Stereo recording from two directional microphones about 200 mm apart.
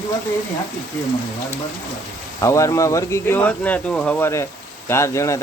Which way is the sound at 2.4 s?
15° left (ahead or behind).